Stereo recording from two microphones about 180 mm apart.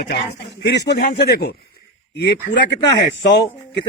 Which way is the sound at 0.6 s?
70° left (ahead or behind).